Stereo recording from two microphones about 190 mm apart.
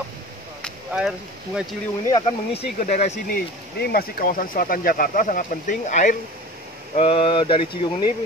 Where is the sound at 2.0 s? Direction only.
25° left (ahead or behind).